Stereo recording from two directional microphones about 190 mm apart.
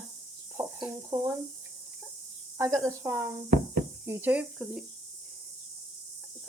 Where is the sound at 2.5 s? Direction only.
15° right (ahead or behind).